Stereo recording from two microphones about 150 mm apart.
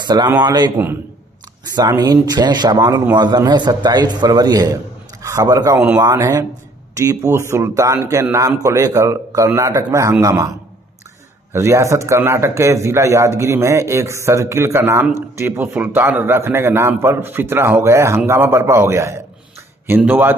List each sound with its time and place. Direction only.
0.0 s a man's voice: 30° right (ahead or behind)
11.5 s a man's voice: 20° right (ahead or behind)